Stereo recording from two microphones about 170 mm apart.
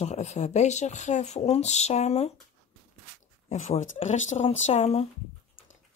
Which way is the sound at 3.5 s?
45° left (ahead or behind).